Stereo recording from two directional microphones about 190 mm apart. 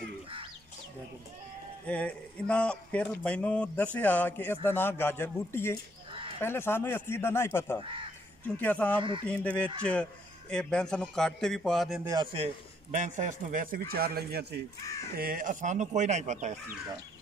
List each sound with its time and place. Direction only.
1.9 s a man's voice: 5° left (ahead or behind)
12.0 s a man's voice: 20° right (ahead or behind)
12.9 s a man's voice: 40° right (ahead or behind); by 14.6 s 55° right (ahead or behind)
14.8 s speech: 15° left (ahead or behind)
15.1 s speech: 50° right (ahead or behind)